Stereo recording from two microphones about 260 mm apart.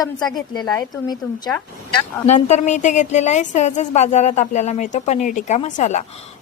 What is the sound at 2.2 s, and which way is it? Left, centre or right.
A woman's voice, left.